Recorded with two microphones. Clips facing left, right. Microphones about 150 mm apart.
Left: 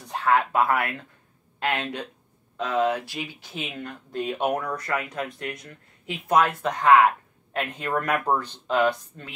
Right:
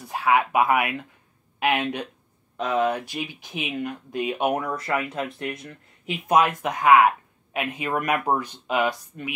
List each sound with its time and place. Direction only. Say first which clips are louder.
0.0 s speech: right 1 dB; 5° right (ahead or behind)